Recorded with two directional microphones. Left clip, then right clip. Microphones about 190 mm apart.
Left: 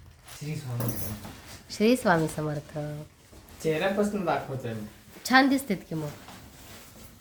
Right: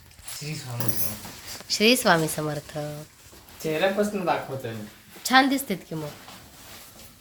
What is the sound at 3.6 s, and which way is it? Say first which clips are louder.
Speech: right 2 dB; 20° right (ahead or behind).